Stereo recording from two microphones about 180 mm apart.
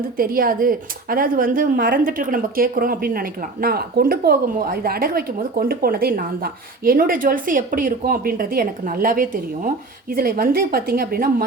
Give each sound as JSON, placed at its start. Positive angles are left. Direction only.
{"t": 0.2, "sound": "speech", "side_deg": -50}